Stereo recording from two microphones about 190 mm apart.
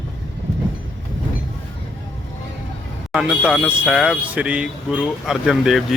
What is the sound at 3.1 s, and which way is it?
Speech, 5° right (ahead or behind).